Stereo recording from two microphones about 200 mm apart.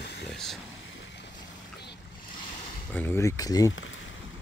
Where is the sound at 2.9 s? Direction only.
10° left (ahead or behind).